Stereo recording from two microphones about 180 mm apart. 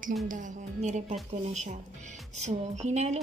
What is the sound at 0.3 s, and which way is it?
A woman's voice, 45° right (ahead or behind).